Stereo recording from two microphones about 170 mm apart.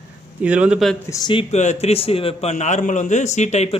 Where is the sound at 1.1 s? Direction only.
25° left (ahead or behind).